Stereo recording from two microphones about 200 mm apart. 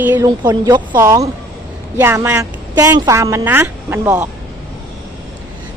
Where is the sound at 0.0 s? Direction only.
10° right (ahead or behind).